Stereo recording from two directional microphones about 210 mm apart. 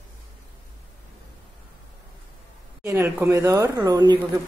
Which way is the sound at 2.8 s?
10° right (ahead or behind).